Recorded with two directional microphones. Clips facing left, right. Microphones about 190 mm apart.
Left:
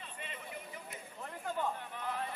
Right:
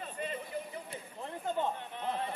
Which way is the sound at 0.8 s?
25° right (ahead or behind).